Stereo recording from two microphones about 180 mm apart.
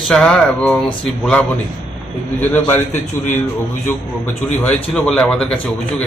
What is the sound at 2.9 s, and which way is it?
Speech, 45° left (ahead or behind).